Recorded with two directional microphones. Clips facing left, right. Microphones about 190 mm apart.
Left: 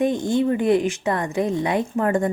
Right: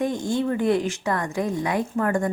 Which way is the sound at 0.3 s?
20° left (ahead or behind).